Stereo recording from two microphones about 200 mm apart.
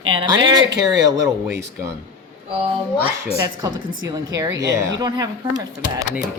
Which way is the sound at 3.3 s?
15° right (ahead or behind).